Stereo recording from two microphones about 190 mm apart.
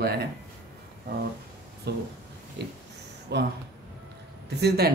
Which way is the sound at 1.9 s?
60° right (ahead or behind).